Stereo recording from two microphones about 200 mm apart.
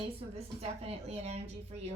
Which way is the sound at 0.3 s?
30° right (ahead or behind).